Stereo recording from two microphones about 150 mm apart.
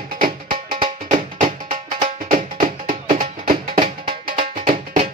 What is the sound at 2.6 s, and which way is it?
Music, 70° right (ahead or behind).